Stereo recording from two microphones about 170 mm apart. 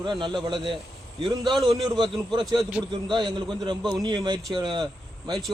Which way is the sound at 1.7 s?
25° right (ahead or behind).